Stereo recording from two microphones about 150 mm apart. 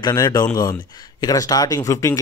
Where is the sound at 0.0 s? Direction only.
25° left (ahead or behind).